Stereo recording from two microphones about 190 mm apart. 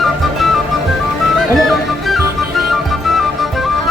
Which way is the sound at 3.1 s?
Centre (ahead or behind).